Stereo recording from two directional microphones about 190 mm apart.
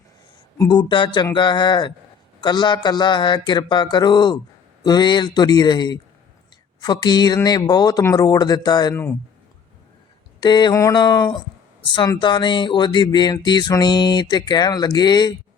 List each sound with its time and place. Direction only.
0.6 s speech: 25° left (ahead or behind)
10.4 s speech: 20° left (ahead or behind)